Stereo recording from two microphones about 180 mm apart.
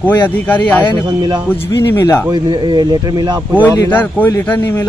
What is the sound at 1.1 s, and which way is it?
Speech, 25° right (ahead or behind).